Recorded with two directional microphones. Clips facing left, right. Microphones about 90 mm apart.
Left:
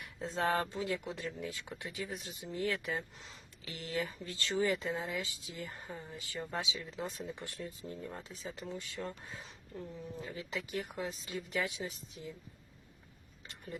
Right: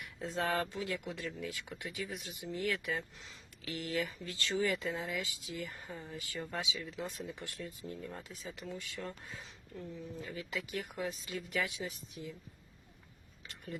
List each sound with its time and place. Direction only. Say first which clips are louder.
0.0 s speech: left 2 dB; 25° left (ahead or behind)